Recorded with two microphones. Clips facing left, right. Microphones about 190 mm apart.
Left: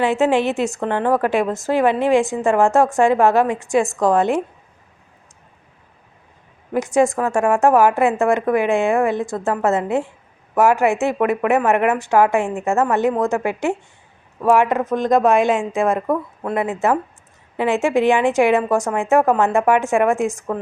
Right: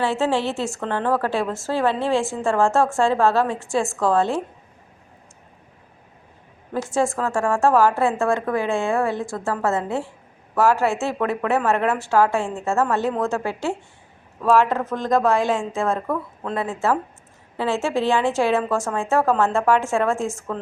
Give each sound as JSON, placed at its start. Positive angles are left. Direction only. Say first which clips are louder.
{"t": 0.0, "sound": "a woman's voice", "louder": "left 5 dB", "side_deg": 15}
{"t": 6.7, "sound": "a woman's voice", "louder": "left 5 dB", "side_deg": 15}